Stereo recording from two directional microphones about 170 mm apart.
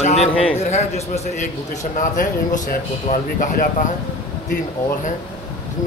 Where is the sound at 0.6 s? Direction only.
40° left (ahead or behind).